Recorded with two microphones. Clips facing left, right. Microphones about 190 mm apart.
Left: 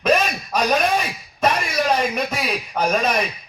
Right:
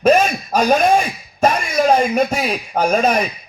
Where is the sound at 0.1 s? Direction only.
50° right (ahead or behind).